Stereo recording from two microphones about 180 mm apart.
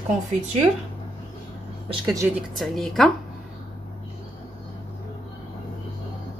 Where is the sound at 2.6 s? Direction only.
Centre (ahead or behind).